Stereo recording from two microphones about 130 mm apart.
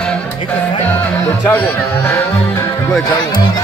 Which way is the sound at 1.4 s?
15° left (ahead or behind).